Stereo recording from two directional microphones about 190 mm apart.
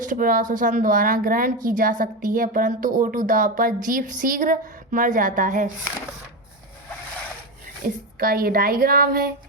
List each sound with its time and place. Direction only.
0.0 s speech: 45° right (ahead or behind)
7.9 s speech: 50° right (ahead or behind)